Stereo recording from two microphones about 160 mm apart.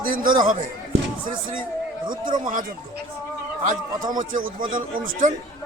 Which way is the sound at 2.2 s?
55° right (ahead or behind).